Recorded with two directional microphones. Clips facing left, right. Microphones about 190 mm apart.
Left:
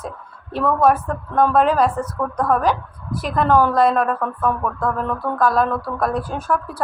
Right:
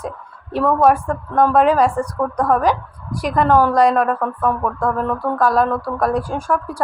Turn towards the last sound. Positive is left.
turn(degrees=-10)  # may be behind; listen again after turning